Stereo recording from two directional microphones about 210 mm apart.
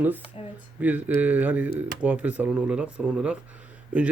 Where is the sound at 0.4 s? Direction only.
25° left (ahead or behind).